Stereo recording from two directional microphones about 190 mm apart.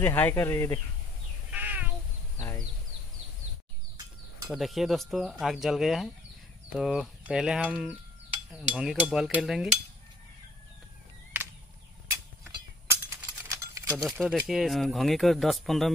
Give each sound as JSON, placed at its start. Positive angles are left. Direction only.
{"t": 0.0, "sound": "speech", "side_deg": 10}
{"t": 1.5, "sound": "cat", "side_deg": -10}
{"t": 2.3, "sound": "a sound", "side_deg": 15}
{"t": 4.5, "sound": "speech", "side_deg": 0}
{"t": 13.0, "sound": "a sound", "side_deg": -15}
{"t": 13.8, "sound": "speech", "side_deg": 0}